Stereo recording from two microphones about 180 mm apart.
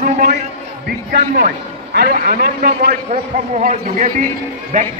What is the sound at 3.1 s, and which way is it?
A man's voice, 45° right (ahead or behind).